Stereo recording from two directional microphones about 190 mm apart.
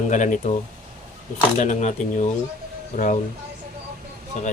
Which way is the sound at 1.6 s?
40° left (ahead or behind).